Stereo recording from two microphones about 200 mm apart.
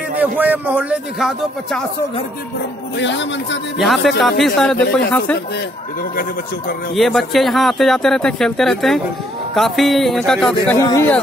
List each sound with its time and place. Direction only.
0.2 s a man's voice: 10° right (ahead or behind)
3.0 s speech: 65° left (ahead or behind)
3.8 s speech: centre (ahead or behind)
7.0 s speech: centre (ahead or behind)
10.9 s speech: 15° left (ahead or behind)